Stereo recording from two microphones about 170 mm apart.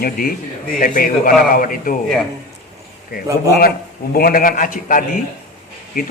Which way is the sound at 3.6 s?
60° left (ahead or behind).